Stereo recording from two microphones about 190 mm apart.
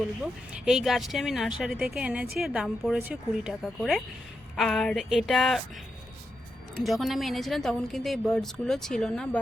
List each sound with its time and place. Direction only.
0.2 s a woman's voice: 5° right (ahead or behind)
6.7 s a woman's voice: centre (ahead or behind)